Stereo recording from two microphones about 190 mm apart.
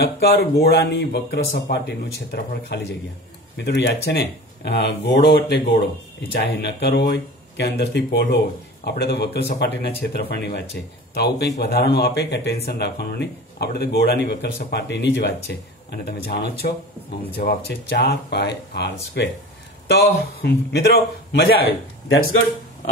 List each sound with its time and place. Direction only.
0.0 s speech: 55° left (ahead or behind)
20.4 s speech: 55° left (ahead or behind)